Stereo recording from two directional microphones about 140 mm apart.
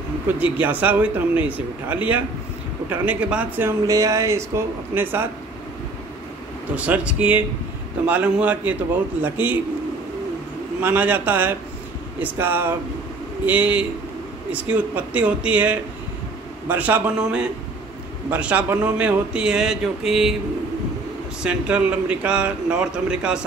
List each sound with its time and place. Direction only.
0.4 s speech: 10° right (ahead or behind)
6.7 s speech: 10° right (ahead or behind)
10.8 s speech: 15° right (ahead or behind)
21.4 s speech: 10° right (ahead or behind)